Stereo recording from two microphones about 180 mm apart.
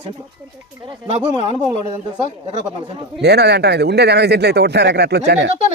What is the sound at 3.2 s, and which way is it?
Speech, 70° right (ahead or behind).